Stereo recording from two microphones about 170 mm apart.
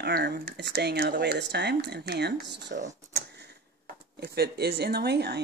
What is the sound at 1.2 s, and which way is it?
Speech, 80° right.